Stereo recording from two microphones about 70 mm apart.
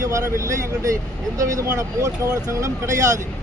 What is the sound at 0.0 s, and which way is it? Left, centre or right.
Speech, right.